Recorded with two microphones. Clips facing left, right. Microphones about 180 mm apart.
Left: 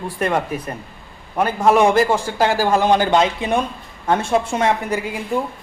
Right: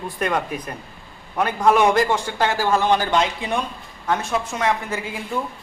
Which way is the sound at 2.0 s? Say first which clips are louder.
Left 3 dB; 10° left (ahead or behind).